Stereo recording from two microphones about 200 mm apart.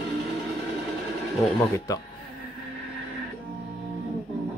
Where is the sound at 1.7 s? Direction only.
15° left (ahead or behind).